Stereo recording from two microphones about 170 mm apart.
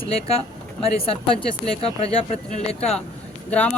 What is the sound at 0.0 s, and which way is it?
Speech, 35° left (ahead or behind).